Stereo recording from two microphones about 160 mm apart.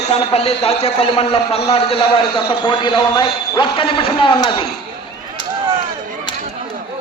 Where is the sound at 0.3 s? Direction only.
40° left (ahead or behind).